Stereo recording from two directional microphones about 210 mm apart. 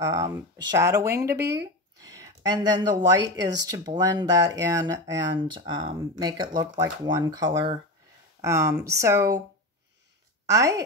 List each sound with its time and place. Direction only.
0.0 s speech: 15° right (ahead or behind)
10.4 s a woman's voice: 15° right (ahead or behind)